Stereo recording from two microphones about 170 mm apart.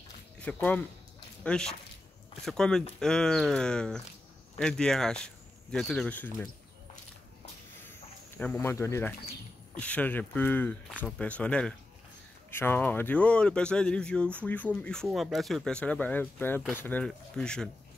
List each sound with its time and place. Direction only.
0.4 s speech: 10° left (ahead or behind)
8.4 s speech: 10° left (ahead or behind)